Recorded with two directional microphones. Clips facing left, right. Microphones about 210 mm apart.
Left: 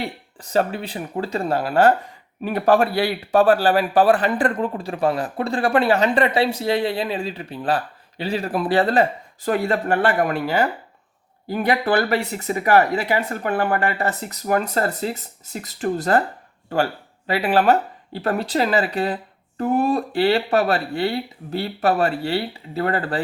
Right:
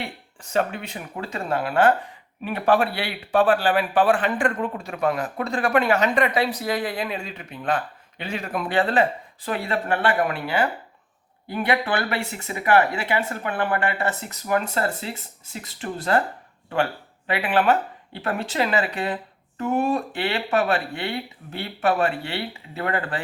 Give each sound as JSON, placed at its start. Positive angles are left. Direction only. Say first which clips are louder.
{"t": 0.0, "sound": "speech", "louder": "left 4 dB", "side_deg": 35}
{"t": 17.2, "sound": "speech", "louder": "left 3 dB", "side_deg": 35}